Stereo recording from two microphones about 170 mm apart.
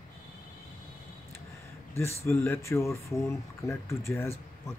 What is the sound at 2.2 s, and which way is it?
Speech, 15° left (ahead or behind).